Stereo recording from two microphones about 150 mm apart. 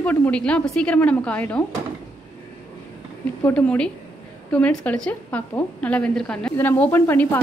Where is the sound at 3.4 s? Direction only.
10° left (ahead or behind).